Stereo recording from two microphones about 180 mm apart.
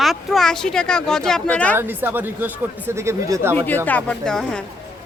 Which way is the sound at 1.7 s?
10° right (ahead or behind).